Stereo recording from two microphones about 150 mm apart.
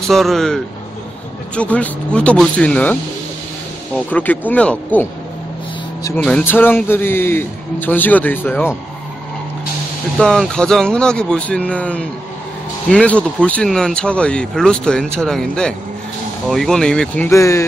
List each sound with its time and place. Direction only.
0.1 s a man's voice: centre (ahead or behind)
6.2 s a man's voice: 10° left (ahead or behind)
10.1 s speech: 5° left (ahead or behind)
17.3 s speech: 20° left (ahead or behind)